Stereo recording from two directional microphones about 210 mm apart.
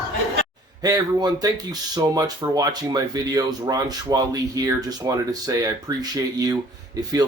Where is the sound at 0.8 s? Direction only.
15° right (ahead or behind).